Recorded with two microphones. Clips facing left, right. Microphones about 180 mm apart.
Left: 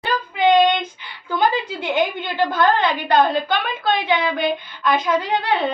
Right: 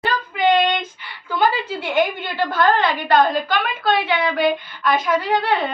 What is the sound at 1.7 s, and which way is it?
A woman's voice, 20° left (ahead or behind).